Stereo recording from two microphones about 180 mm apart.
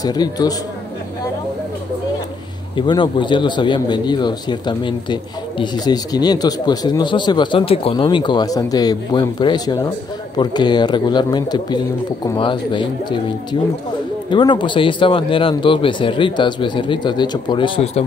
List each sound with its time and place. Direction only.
0.0 s speech: 20° left (ahead or behind)
2.7 s speech: 25° left (ahead or behind)